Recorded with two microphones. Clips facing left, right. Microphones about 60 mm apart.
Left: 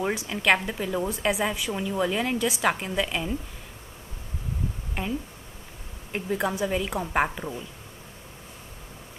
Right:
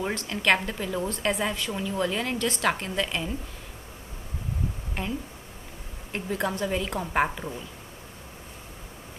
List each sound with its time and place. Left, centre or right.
0.0 s a woman's voice: centre
5.0 s speech: centre
6.1 s a woman's voice: centre